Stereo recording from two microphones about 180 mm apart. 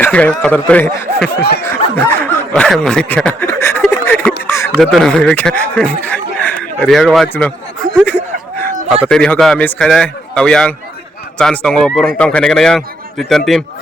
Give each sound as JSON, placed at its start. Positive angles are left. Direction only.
{"t": 0.0, "sound": "a man's voice", "side_deg": 5}
{"t": 1.4, "sound": "speech", "side_deg": 65}
{"t": 1.6, "sound": "speech", "side_deg": 10}
{"t": 3.9, "sound": "a sound", "side_deg": 10}
{"t": 4.8, "sound": "speech", "side_deg": 0}